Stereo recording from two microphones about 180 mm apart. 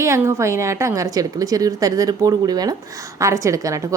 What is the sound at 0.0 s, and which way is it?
A woman's voice, 15° right (ahead or behind).